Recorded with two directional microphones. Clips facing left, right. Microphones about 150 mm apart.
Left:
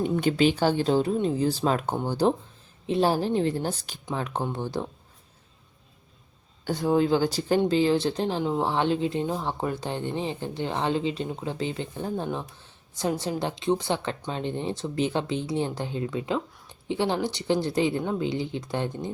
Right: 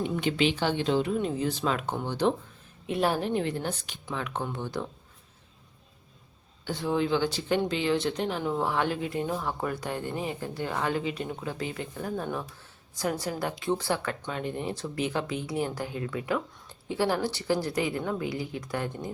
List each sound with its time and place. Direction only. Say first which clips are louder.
0.0 s speech: left 4 dB; 40° left (ahead or behind)
6.7 s speech: left 5 dB; 45° left (ahead or behind); by 19.1 s 25° left (ahead or behind)